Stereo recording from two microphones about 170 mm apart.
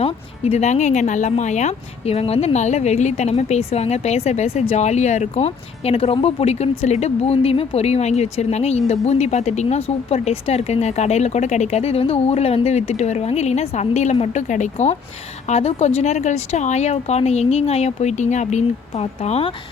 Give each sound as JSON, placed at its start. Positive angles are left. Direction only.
{"t": 0.0, "sound": "speech", "side_deg": 35}